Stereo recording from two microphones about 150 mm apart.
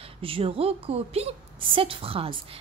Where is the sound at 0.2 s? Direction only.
40° right (ahead or behind).